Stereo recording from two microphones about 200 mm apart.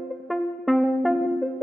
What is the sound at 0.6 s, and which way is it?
Music, centre (ahead or behind).